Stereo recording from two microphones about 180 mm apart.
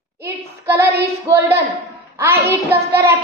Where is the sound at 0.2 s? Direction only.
15° right (ahead or behind).